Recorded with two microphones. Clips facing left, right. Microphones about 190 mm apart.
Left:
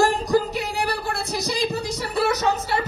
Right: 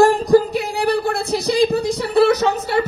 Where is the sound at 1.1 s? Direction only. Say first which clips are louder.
Right 7 dB; 60° right (ahead or behind).